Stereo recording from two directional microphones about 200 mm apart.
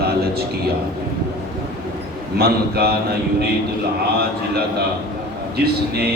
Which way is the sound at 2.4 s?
50° right (ahead or behind).